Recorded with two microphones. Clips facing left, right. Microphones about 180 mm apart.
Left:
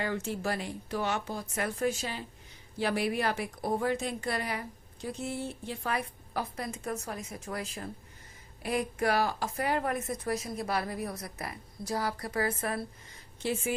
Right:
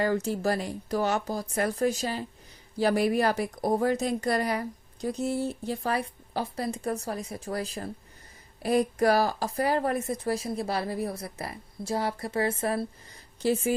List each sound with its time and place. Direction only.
0.0 s a woman's voice: 40° right (ahead or behind)